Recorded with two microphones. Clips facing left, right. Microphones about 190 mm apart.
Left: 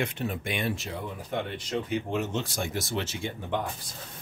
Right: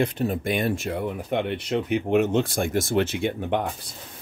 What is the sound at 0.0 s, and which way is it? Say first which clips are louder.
Speech: right 7 dB; 40° right (ahead or behind).